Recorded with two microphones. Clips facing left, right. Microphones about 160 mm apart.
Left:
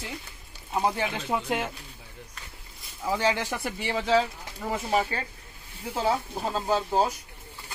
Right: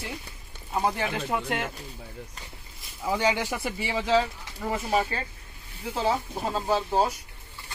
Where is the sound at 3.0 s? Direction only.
10° right (ahead or behind).